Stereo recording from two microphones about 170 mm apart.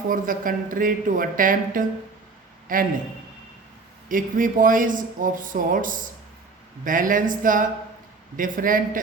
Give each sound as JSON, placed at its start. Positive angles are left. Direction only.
{"t": 0.1, "sound": "speech", "side_deg": -55}
{"t": 4.1, "sound": "speech", "side_deg": -55}